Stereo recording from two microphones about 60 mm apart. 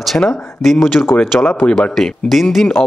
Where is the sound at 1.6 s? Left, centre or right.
Left.